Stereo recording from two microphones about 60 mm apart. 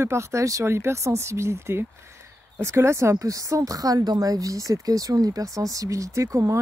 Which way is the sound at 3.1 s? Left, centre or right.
Right.